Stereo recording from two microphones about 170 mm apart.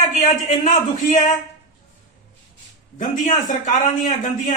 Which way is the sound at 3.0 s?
50° left (ahead or behind).